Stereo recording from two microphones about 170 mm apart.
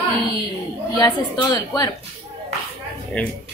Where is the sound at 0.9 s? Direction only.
25° left (ahead or behind).